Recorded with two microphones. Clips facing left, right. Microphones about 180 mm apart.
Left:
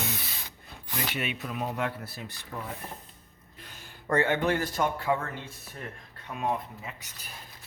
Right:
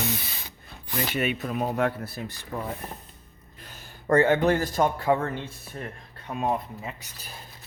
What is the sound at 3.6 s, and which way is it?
A man's voice, 40° right (ahead or behind).